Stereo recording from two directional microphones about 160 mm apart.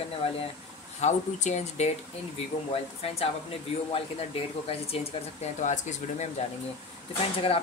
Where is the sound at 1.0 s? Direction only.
45° left (ahead or behind).